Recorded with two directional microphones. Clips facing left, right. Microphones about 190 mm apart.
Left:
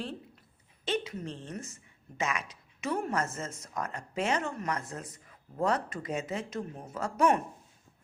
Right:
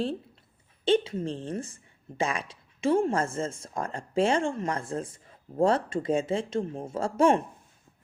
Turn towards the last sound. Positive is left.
turn(degrees=-30)  # may be behind; listen again after turning